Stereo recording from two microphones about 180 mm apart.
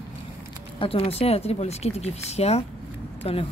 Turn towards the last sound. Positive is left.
turn(degrees=35)  # may be behind; listen again after turning